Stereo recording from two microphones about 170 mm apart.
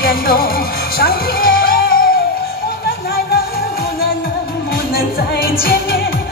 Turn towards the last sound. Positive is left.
turn(degrees=65)  # may be behind; listen again after turning